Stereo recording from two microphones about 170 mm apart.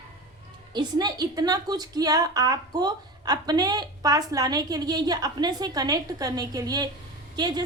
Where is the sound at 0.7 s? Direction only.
25° right (ahead or behind).